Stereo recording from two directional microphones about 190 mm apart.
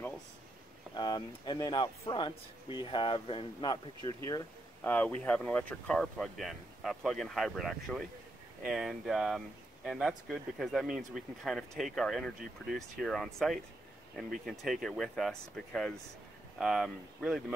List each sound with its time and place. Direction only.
0.9 s speech: 20° left (ahead or behind)
4.8 s speech: 10° left (ahead or behind)